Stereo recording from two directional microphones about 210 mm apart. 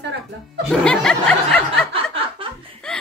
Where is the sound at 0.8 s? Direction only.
5° left (ahead or behind).